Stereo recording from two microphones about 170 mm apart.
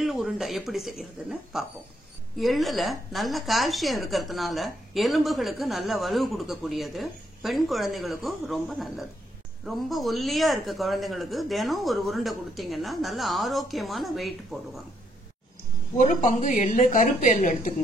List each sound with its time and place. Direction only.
0.0 s a woman's voice: centre (ahead or behind)
16.0 s a woman's voice: 45° left (ahead or behind)